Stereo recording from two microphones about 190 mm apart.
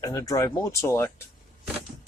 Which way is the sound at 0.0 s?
15° left (ahead or behind).